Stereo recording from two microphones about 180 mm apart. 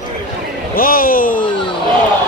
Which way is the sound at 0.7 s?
50° left (ahead or behind).